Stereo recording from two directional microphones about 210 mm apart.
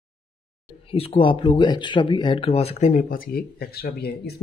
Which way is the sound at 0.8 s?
25° left (ahead or behind).